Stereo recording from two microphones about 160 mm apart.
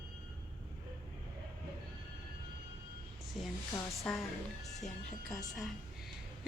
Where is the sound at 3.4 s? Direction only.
Centre (ahead or behind).